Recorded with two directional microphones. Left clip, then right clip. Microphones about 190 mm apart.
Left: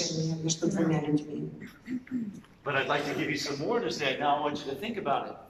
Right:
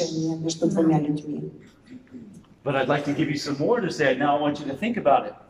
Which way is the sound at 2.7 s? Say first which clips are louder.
Right 5 dB; 50° right (ahead or behind).